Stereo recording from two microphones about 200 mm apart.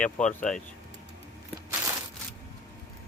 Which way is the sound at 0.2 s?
35° left (ahead or behind).